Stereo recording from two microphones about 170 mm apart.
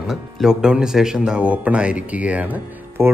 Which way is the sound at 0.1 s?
5° right (ahead or behind).